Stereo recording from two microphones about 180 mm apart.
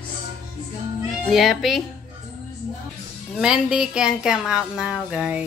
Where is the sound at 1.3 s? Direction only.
Centre (ahead or behind).